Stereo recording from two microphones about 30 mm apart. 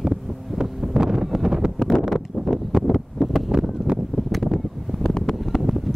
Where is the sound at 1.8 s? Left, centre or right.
Left.